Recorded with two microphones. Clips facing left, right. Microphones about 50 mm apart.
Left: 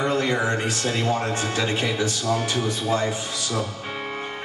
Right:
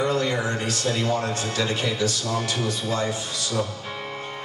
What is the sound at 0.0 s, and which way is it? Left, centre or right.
Speech, left.